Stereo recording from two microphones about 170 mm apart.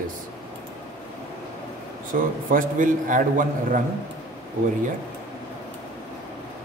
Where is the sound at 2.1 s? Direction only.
50° right (ahead or behind).